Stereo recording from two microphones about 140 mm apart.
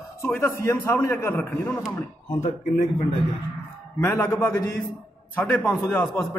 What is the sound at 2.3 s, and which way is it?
Speech, 60° left (ahead or behind).